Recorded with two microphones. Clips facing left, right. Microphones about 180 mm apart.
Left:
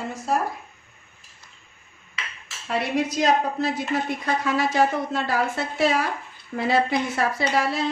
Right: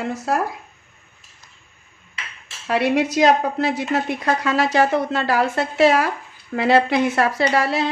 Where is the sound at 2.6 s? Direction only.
80° right.